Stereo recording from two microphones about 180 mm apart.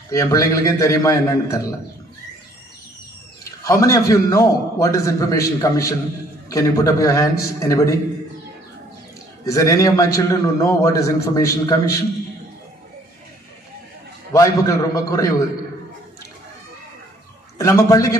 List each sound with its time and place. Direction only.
0.1 s a man's voice: 20° left (ahead or behind)
3.6 s a man's voice: 15° left (ahead or behind)
9.4 s a man's voice: 20° left (ahead or behind)
14.3 s a man's voice: 15° left (ahead or behind)
17.6 s a man's voice: 15° left (ahead or behind)